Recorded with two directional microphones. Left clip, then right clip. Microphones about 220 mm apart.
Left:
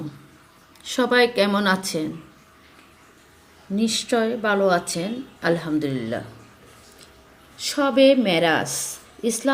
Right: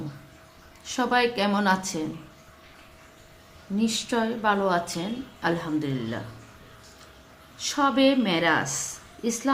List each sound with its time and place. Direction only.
0.9 s a woman's voice: 15° left (ahead or behind)
3.8 s a woman's voice: 10° left (ahead or behind)
7.6 s a woman's voice: 15° left (ahead or behind)